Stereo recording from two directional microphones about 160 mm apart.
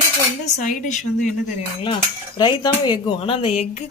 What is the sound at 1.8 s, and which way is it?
Speech, 30° left (ahead or behind).